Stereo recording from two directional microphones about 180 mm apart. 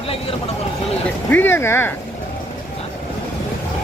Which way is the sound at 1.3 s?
10° left (ahead or behind).